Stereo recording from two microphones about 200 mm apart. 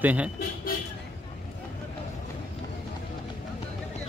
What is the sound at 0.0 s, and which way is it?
Speech, 5° right (ahead or behind).